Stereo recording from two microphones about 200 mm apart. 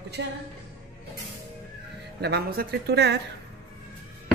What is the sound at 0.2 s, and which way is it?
Speech, 60° right (ahead or behind).